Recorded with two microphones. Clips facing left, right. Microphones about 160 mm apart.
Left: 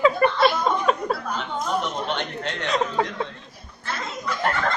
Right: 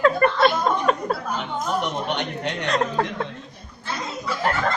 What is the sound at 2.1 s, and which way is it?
Speech, 10° right (ahead or behind).